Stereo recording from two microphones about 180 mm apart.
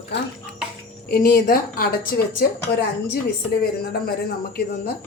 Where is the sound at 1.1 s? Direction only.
55° left (ahead or behind).